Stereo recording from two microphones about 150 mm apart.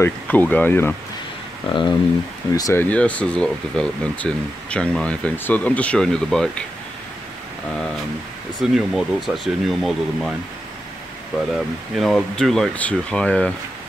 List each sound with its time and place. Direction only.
0.0 s speech: 10° left (ahead or behind)
1.7 s speech: 35° left (ahead or behind)
2.8 s speech: 10° left (ahead or behind)
8.5 s speech: centre (ahead or behind)
11.9 s speech: centre (ahead or behind)